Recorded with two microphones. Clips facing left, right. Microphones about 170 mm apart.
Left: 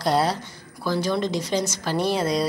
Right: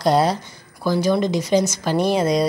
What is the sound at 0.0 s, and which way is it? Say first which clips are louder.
Speech: right 4 dB; 15° right (ahead or behind).